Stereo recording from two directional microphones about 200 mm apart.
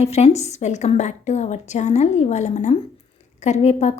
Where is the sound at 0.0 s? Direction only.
30° left (ahead or behind).